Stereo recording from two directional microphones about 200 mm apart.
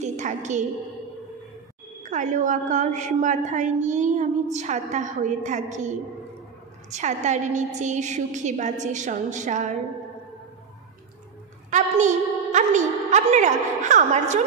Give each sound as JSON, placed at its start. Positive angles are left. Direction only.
{"t": 0.0, "sound": "a sound", "side_deg": -35}
{"t": 2.0, "sound": "a woman's voice", "side_deg": -40}
{"t": 11.7, "sound": "a woman's voice", "side_deg": -35}